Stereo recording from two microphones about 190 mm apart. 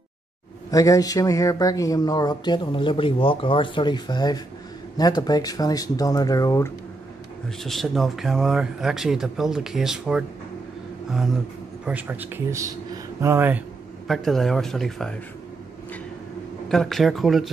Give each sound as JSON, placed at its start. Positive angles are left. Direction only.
{"t": 0.7, "sound": "speech", "side_deg": 15}
{"t": 7.4, "sound": "speech", "side_deg": 0}
{"t": 14.0, "sound": "speech", "side_deg": 0}
{"t": 16.6, "sound": "speech", "side_deg": 0}